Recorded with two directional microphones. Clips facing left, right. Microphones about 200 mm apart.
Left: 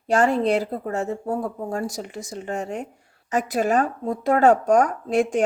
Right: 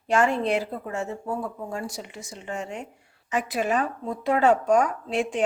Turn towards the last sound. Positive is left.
turn(degrees=45)  # may be behind; listen again after turning